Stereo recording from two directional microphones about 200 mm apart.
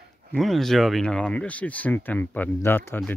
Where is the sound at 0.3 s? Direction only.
Centre (ahead or behind).